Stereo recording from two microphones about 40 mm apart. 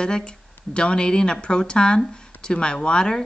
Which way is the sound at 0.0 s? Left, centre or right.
Left.